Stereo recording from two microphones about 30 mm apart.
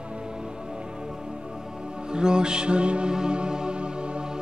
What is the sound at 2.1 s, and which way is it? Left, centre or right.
Music, right.